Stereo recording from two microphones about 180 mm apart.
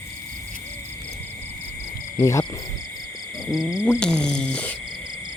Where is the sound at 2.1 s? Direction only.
15° left (ahead or behind).